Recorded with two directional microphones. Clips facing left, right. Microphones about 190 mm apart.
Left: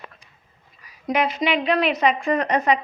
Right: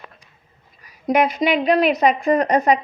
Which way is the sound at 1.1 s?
40° right (ahead or behind).